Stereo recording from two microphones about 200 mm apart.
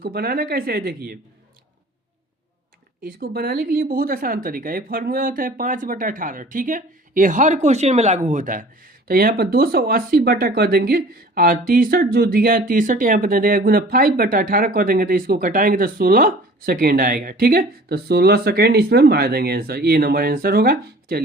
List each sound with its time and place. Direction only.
0.0 s speech: 50° right (ahead or behind)
3.0 s speech: 45° right (ahead or behind)